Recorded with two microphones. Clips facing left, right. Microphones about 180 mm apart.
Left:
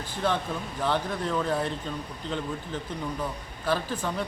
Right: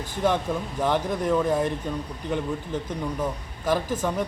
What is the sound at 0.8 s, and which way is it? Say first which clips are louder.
Speech: right 3 dB; 15° right (ahead or behind).